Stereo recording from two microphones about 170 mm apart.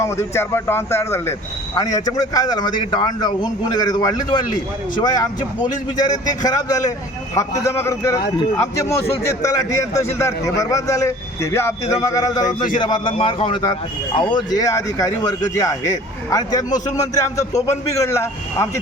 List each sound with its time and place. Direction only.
0.0 s a man's voice: 15° left (ahead or behind)